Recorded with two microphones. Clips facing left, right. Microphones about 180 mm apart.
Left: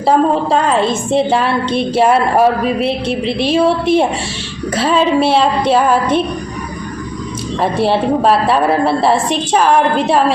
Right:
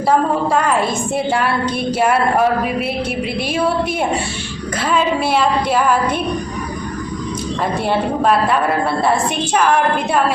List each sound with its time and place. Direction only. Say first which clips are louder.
0.5 s a woman's voice: left 3 dB; 25° left (ahead or behind)
7.6 s a woman's voice: left 5 dB; 30° left (ahead or behind)